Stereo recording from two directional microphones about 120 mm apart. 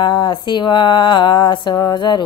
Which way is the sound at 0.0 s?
40° left (ahead or behind).